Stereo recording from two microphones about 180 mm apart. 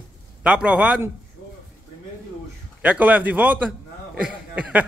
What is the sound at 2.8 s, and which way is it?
A man's voice, 10° right (ahead or behind).